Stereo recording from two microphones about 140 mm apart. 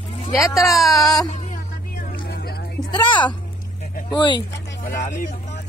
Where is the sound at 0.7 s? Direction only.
Centre (ahead or behind).